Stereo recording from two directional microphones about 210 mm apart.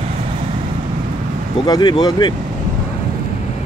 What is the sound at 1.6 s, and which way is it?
Speech, 20° left (ahead or behind).